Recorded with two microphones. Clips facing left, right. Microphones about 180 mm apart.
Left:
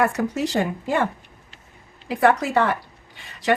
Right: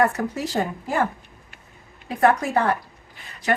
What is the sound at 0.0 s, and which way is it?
Speech, 80° left.